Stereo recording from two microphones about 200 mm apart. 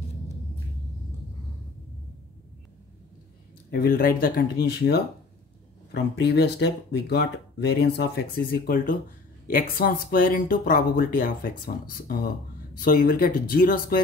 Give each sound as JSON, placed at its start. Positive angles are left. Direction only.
{"t": 3.7, "sound": "speech", "side_deg": 45}